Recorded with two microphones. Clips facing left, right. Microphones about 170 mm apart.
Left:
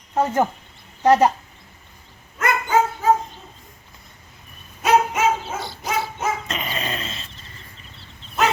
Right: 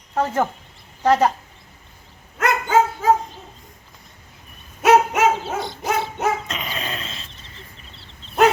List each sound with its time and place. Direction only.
0.1 s speech: 10° left (ahead or behind)
2.4 s dog: 90° right
4.8 s dog: 70° right (ahead or behind)
6.5 s a sound: centre (ahead or behind)